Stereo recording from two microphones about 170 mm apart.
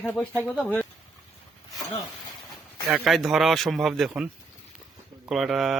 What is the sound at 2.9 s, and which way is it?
Speech, 5° right (ahead or behind).